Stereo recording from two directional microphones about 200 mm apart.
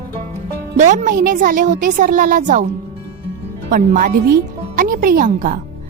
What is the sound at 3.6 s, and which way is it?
A woman's voice, 40° right (ahead or behind).